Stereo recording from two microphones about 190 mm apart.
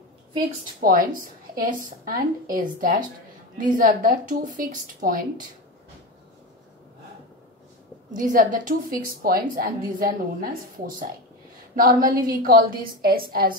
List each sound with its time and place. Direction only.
0.7 s a woman's voice: 45° right (ahead or behind)
8.2 s a woman's voice: 45° right (ahead or behind)
11.7 s a woman's voice: 50° right (ahead or behind)